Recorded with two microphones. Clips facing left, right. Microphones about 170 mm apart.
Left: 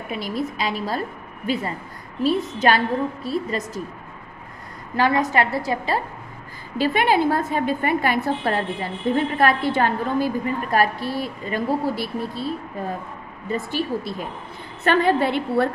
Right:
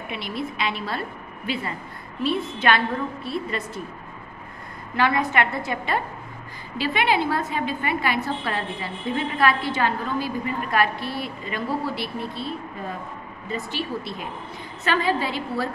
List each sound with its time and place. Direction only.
0.1 s a woman's voice: 40° left (ahead or behind)
4.9 s a woman's voice: 40° left (ahead or behind)
6.8 s a woman's voice: 45° left (ahead or behind)
14.8 s a woman's voice: 55° left (ahead or behind)